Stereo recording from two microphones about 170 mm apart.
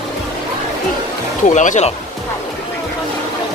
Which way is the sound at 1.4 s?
45° left (ahead or behind).